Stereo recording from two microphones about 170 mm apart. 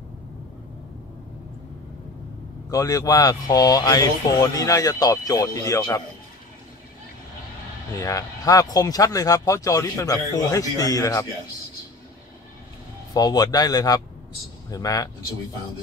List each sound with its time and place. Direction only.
2.7 s speech: 20° left (ahead or behind)
8.0 s speech: 20° left (ahead or behind)
13.1 s speech: 20° left (ahead or behind)